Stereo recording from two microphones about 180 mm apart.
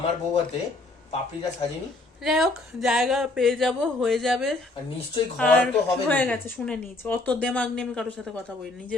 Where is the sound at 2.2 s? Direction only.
Centre (ahead or behind).